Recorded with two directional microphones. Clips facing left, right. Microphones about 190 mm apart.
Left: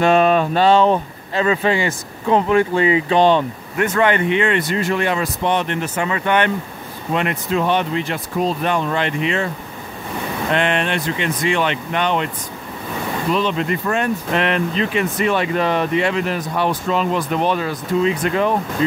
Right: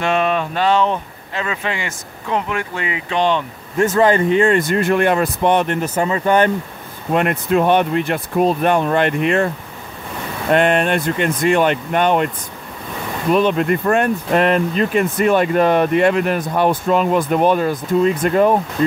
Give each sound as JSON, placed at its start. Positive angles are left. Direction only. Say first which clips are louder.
{"t": 0.0, "sound": "speech", "louder": "left 4 dB", "side_deg": 40}
{"t": 3.7, "sound": "speech", "louder": "right 3 dB", "side_deg": -30}
{"t": 7.2, "sound": "speech", "louder": "right 4 dB", "side_deg": -50}
{"t": 10.5, "sound": "speech", "louder": "right 5 dB", "side_deg": -45}
{"t": 13.3, "sound": "speech", "louder": "right 5 dB", "side_deg": -50}